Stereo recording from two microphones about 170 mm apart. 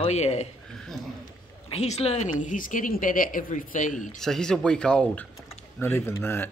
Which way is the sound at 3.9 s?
Centre (ahead or behind).